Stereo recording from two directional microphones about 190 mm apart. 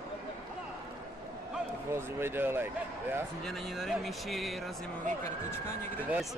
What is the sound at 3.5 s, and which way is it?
Speech, centre (ahead or behind).